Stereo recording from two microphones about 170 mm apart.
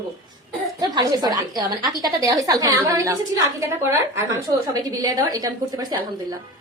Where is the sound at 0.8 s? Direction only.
25° right (ahead or behind).